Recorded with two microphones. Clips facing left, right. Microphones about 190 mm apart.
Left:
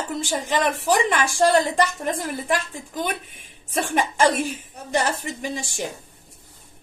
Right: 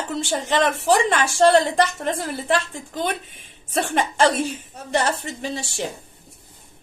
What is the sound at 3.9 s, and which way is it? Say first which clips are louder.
A woman's voice: even; 10° left (ahead or behind).